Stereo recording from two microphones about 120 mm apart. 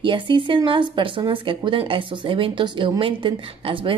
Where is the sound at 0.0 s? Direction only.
45° right (ahead or behind).